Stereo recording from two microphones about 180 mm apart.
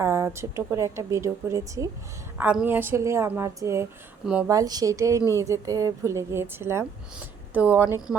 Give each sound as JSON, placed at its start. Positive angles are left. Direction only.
{"t": 0.0, "sound": "a woman's voice", "side_deg": -15}